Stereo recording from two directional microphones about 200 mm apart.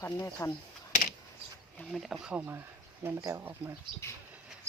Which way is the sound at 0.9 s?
40° left (ahead or behind).